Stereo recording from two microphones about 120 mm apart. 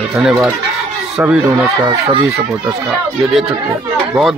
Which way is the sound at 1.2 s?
10° right (ahead or behind).